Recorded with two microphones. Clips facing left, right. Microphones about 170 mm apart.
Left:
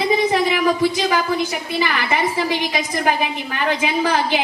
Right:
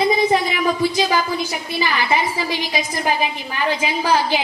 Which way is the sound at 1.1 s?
60° left (ahead or behind).